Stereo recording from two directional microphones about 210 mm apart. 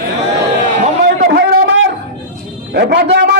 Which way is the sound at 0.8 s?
40° right (ahead or behind).